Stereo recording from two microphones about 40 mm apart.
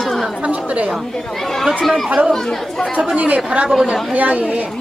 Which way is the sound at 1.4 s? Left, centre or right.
Centre.